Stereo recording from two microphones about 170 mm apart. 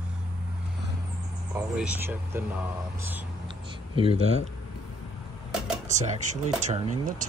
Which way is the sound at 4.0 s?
35° right (ahead or behind).